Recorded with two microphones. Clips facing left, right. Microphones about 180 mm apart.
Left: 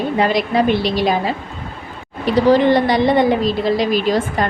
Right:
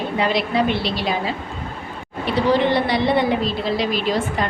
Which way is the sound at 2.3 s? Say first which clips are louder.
Left 5 dB; 45° left (ahead or behind).